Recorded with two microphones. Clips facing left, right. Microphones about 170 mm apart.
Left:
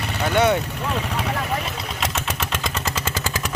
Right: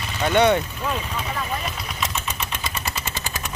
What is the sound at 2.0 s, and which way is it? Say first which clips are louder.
Vehicle: left 2 dB; 85° left.